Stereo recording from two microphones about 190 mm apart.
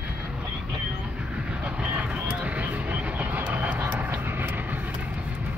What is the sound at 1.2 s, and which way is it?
Vehicle, 5° right (ahead or behind).